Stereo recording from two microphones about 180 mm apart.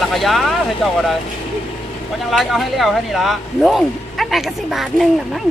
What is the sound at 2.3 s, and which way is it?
Speech, centre (ahead or behind).